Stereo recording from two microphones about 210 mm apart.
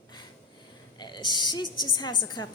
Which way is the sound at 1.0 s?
20° left (ahead or behind).